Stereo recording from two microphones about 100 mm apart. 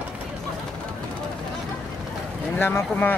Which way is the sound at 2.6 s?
20° left (ahead or behind).